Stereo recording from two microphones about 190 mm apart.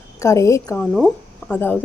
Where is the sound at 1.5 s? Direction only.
10° left (ahead or behind).